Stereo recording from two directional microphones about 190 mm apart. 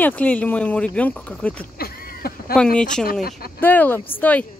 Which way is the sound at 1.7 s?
50° left (ahead or behind).